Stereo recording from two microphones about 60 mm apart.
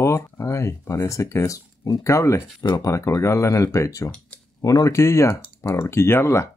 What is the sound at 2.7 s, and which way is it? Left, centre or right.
Speech, left.